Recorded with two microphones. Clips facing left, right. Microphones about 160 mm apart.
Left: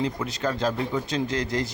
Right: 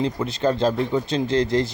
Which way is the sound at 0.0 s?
25° right (ahead or behind).